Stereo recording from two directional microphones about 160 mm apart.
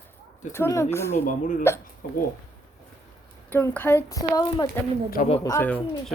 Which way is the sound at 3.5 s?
10° left (ahead or behind).